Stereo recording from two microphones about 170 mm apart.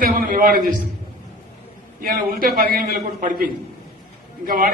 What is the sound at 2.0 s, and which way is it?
A man's voice, 60° right (ahead or behind).